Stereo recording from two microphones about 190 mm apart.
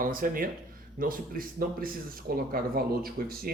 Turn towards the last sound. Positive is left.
turn(degrees=-50)  # may be behind; listen again after turning